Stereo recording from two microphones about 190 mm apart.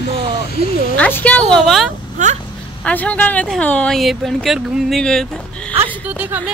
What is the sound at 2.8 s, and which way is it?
Speech, 10° left (ahead or behind).